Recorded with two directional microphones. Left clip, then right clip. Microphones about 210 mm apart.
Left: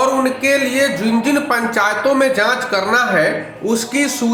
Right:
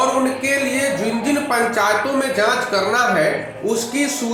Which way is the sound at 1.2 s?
45° left (ahead or behind).